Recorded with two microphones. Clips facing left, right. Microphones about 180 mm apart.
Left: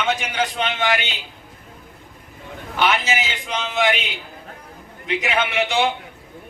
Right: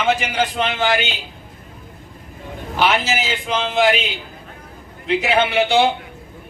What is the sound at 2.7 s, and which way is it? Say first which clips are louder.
A man's voice: right 2 dB; 30° right (ahead or behind).